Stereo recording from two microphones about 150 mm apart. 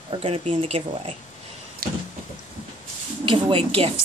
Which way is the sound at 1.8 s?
85° right.